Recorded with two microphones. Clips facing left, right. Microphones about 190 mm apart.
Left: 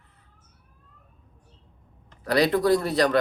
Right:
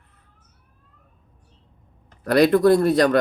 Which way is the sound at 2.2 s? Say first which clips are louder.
Right 5 dB; 55° right (ahead or behind).